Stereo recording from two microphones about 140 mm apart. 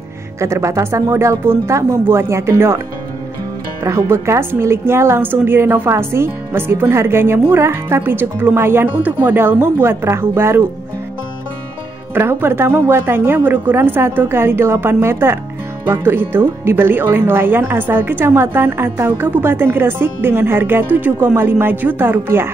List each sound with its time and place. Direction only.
0.4 s speech: 20° right (ahead or behind)
3.8 s a woman's voice: 20° right (ahead or behind)
12.1 s a woman's voice: 15° right (ahead or behind)